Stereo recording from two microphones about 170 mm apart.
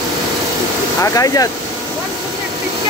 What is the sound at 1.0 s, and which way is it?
Speech, 20° left (ahead or behind).